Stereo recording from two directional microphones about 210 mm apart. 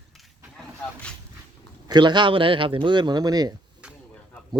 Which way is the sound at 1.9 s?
20° right (ahead or behind).